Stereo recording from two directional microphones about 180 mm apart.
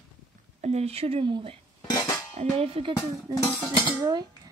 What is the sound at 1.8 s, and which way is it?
Music, 20° left (ahead or behind).